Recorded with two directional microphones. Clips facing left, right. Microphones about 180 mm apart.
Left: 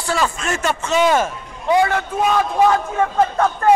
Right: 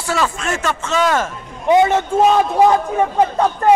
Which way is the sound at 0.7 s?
15° left (ahead or behind).